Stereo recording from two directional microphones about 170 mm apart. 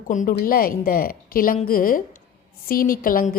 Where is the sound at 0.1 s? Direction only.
50° left (ahead or behind).